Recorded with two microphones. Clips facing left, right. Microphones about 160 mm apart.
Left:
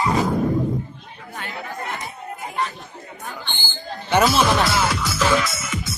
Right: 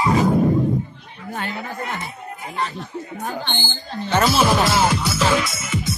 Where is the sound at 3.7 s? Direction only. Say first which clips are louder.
Right 1 dB; 10° left (ahead or behind).